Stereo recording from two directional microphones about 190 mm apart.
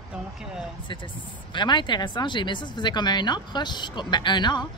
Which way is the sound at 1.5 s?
25° left (ahead or behind).